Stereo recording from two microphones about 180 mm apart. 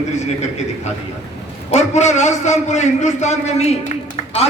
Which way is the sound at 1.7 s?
40° left (ahead or behind).